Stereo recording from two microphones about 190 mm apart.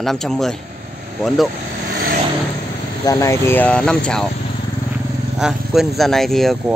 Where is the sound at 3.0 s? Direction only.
15° left (ahead or behind).